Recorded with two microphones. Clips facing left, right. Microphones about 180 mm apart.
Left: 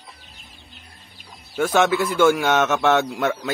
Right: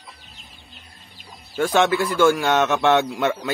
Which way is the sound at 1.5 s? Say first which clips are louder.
Even; 5° left (ahead or behind).